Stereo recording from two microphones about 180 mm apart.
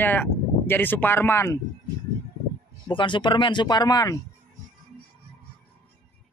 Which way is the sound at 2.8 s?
25° left (ahead or behind).